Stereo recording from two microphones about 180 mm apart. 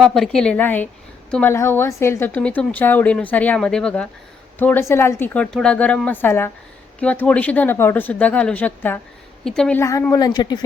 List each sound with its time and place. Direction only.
0.0 s a woman's voice: centre (ahead or behind)
9.8 s a woman's voice: 15° left (ahead or behind)